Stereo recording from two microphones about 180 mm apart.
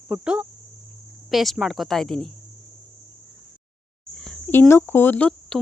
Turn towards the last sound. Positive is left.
turn(degrees=5)  # may be behind; listen again after turning